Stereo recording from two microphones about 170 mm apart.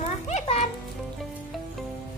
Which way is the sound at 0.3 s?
40° left (ahead or behind).